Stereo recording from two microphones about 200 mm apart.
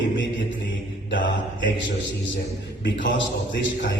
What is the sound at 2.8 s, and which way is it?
Music, 65° left (ahead or behind).